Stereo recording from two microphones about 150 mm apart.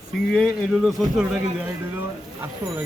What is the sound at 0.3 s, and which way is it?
Speech, centre (ahead or behind).